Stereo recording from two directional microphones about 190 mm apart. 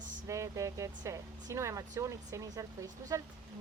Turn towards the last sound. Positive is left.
turn(degrees=-15)  # may be behind; listen again after turning